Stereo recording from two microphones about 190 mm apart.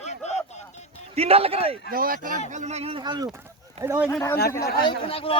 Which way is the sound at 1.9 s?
50° right (ahead or behind).